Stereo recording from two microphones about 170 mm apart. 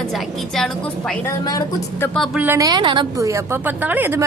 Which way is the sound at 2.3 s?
15° right (ahead or behind).